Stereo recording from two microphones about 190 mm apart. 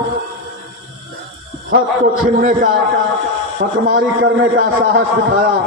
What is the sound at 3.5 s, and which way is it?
A man's voice, 80° right.